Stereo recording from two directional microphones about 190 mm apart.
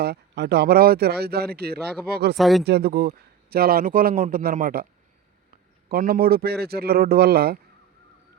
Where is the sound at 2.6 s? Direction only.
60° right (ahead or behind).